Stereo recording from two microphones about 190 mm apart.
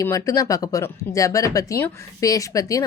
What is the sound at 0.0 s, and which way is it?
Speech, 15° left (ahead or behind).